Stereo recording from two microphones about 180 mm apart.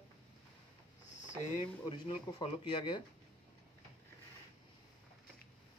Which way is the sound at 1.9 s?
30° left (ahead or behind).